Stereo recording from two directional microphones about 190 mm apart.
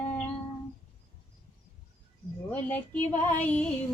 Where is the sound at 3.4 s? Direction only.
10° left (ahead or behind).